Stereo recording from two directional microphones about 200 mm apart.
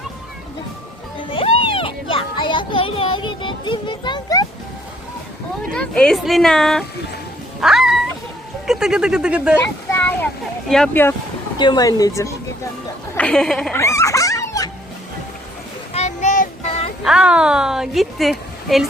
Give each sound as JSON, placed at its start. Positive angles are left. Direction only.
{"t": 1.3, "sound": "a child's voice", "side_deg": 25}
{"t": 5.7, "sound": "a woman's voice", "side_deg": 5}
{"t": 7.6, "sound": "cat", "side_deg": 0}
{"t": 8.6, "sound": "a woman's voice", "side_deg": -5}
{"t": 9.9, "sound": "a sound", "side_deg": 10}
{"t": 10.7, "sound": "speech", "side_deg": 5}
{"t": 11.5, "sound": "speech", "side_deg": 20}
{"t": 13.1, "sound": "a woman's voice", "side_deg": 5}
{"t": 13.7, "sound": "dog", "side_deg": 15}
{"t": 15.9, "sound": "child singing", "side_deg": 35}
{"t": 17.0, "sound": "a woman's voice", "side_deg": -5}